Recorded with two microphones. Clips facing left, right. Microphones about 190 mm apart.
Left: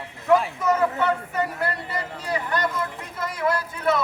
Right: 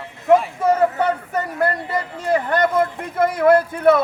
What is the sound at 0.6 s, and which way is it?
Speech, 40° right (ahead or behind).